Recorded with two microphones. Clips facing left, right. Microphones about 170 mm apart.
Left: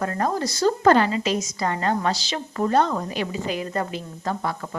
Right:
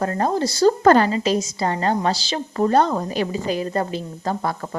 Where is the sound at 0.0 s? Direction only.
30° right (ahead or behind).